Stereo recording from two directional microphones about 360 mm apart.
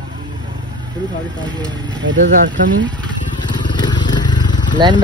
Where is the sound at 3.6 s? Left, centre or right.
Centre.